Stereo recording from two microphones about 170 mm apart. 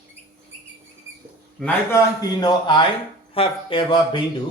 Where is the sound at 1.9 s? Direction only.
25° left (ahead or behind).